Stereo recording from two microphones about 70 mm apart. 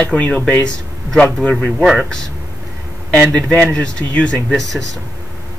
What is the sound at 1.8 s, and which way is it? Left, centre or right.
Speech, centre.